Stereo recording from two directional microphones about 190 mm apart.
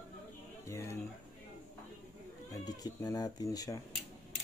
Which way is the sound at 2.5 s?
20° left (ahead or behind).